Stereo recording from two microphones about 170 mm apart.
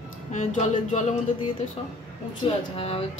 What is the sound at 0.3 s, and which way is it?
Speech, 45° left (ahead or behind).